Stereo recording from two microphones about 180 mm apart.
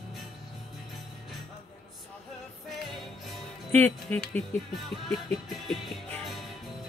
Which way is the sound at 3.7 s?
10° left (ahead or behind).